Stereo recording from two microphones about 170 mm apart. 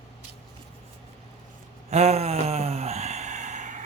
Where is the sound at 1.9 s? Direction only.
40° right (ahead or behind).